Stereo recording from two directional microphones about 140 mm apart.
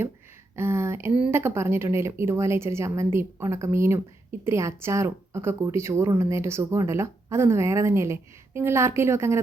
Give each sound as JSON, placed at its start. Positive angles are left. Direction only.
{"t": 0.5, "sound": "speech", "side_deg": -20}